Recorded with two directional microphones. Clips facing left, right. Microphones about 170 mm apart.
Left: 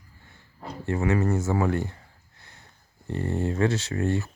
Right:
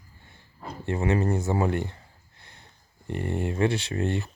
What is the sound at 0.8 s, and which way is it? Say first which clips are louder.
Speech: left 1 dB; 20° right (ahead or behind).